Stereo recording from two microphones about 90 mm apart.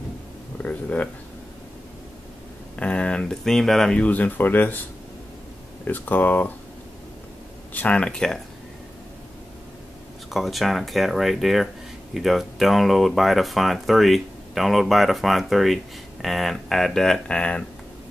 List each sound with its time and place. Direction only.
0.6 s speech: 15° left (ahead or behind)
2.7 s speech: 15° left (ahead or behind)
5.9 s speech: 20° left (ahead or behind)
7.7 s speech: 15° left (ahead or behind)
10.3 s speech: centre (ahead or behind)